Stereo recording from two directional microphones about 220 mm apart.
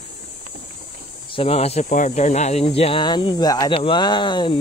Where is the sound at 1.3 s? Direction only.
25° left (ahead or behind).